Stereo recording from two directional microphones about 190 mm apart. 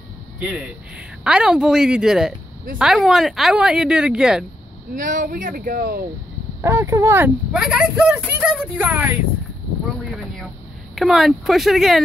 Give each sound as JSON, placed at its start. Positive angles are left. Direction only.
{"t": 0.4, "sound": "speech", "side_deg": -5}
{"t": 4.9, "sound": "speech", "side_deg": -45}
{"t": 6.6, "sound": "speech", "side_deg": -15}
{"t": 11.0, "sound": "speech", "side_deg": 0}